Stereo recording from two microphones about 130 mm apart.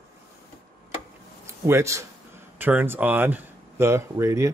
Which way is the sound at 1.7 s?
20° right (ahead or behind).